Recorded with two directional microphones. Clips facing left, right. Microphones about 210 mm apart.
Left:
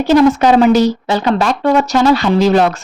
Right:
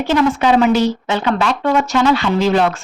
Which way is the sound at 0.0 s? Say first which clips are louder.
Left 5 dB; 40° left (ahead or behind).